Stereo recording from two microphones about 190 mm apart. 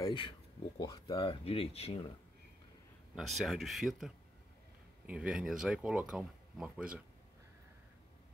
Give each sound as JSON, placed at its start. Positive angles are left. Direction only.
{"t": 0.0, "sound": "speech", "side_deg": 25}
{"t": 3.2, "sound": "speech", "side_deg": 0}